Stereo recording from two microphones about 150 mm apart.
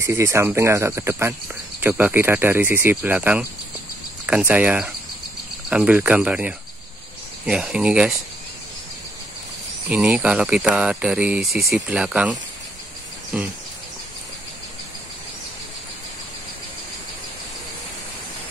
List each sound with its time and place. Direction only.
0.0 s speech: 20° right (ahead or behind)
9.8 s speech: 5° right (ahead or behind)